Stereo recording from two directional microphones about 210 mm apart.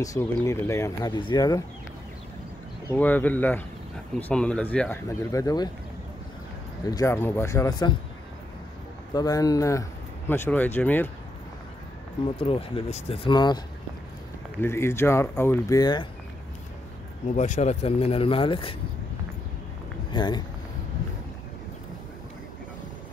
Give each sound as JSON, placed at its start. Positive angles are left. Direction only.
{"t": 0.0, "sound": "speech", "side_deg": 15}
{"t": 2.9, "sound": "speech", "side_deg": 10}
{"t": 6.9, "sound": "speech", "side_deg": 15}
{"t": 9.1, "sound": "speech", "side_deg": 15}
{"t": 12.4, "sound": "speech", "side_deg": 25}
{"t": 14.6, "sound": "speech", "side_deg": 10}
{"t": 17.3, "sound": "speech", "side_deg": 35}
{"t": 20.1, "sound": "speech", "side_deg": 20}